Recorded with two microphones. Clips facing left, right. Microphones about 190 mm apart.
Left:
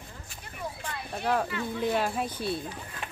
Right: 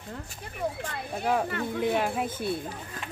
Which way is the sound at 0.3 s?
50° right (ahead or behind).